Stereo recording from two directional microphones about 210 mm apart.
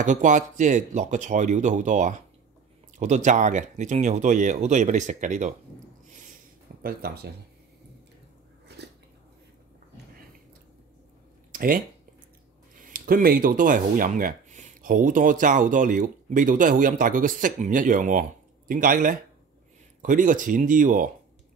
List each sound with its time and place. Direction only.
0.0 s speech: 35° right (ahead or behind)
6.8 s speech: 45° right (ahead or behind)
8.6 s biting: 55° right (ahead or behind)
11.5 s a sound: 40° right (ahead or behind)
12.8 s speech: 40° right (ahead or behind)